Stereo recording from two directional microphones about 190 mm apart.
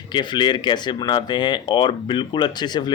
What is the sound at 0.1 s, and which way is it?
Speech, 25° left (ahead or behind).